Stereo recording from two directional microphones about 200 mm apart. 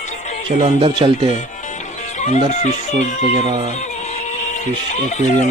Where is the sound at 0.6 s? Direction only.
25° right (ahead or behind).